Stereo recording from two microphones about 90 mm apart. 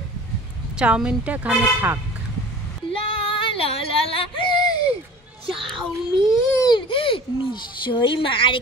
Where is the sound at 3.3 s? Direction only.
75° left (ahead or behind).